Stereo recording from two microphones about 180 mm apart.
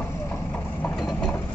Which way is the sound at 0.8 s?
5° left (ahead or behind).